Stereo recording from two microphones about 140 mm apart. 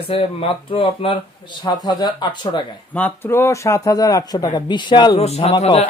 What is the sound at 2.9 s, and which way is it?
Speech, 15° left (ahead or behind).